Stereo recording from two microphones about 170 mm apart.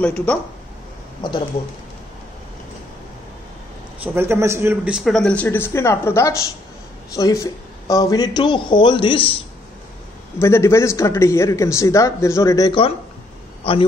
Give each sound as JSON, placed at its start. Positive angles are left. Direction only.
{"t": 0.0, "sound": "speech", "side_deg": 10}
{"t": 4.0, "sound": "speech", "side_deg": -15}
{"t": 10.4, "sound": "a man's voice", "side_deg": 15}